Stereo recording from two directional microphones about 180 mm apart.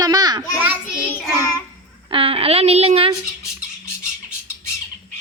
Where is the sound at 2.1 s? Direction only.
30° right (ahead or behind).